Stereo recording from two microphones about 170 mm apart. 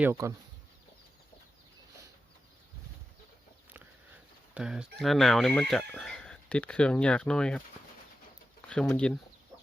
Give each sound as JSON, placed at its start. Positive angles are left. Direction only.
{"t": 0.0, "sound": "speech", "side_deg": -15}
{"t": 4.5, "sound": "speech", "side_deg": -5}
{"t": 8.7, "sound": "speech", "side_deg": 5}